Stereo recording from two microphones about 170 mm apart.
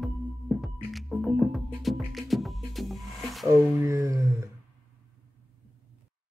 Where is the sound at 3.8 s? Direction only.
15° right (ahead or behind).